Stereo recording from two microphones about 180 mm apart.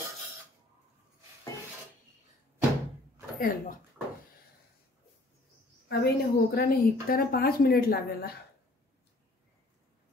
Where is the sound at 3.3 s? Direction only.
50° left (ahead or behind).